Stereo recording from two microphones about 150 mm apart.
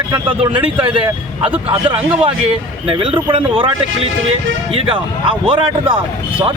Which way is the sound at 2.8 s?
35° right (ahead or behind).